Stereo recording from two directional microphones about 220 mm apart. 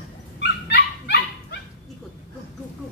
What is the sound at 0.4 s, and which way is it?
Dog, 50° left (ahead or behind).